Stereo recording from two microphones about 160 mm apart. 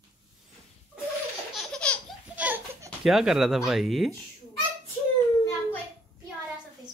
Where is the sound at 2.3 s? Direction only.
10° right (ahead or behind).